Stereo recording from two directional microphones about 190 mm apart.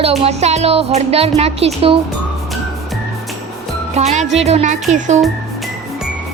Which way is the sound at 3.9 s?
35° right (ahead or behind).